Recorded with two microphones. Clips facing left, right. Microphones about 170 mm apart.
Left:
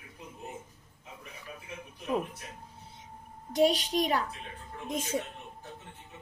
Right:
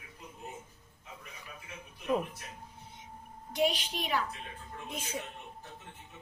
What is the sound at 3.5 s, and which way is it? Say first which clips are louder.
Speech: left 6 dB; 40° left (ahead or behind).